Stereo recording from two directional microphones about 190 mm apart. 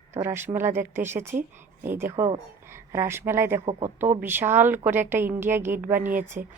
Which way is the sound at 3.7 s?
35° right (ahead or behind).